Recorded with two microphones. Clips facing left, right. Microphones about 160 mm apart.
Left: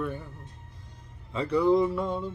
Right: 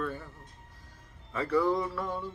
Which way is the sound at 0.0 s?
15° left (ahead or behind).